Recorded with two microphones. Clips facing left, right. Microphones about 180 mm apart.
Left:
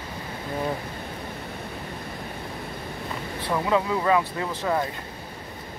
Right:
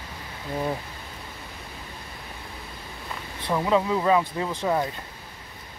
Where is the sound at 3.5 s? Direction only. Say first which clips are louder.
Right 1 dB; 15° right (ahead or behind).